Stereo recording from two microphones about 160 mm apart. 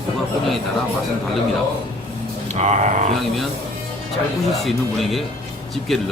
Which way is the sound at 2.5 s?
45° right (ahead or behind).